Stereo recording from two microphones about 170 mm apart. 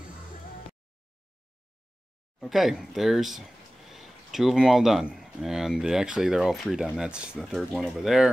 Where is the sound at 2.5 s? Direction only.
Centre (ahead or behind).